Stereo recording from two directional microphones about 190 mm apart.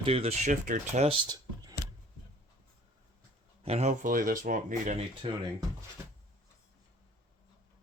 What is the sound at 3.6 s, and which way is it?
Speech, 35° right (ahead or behind).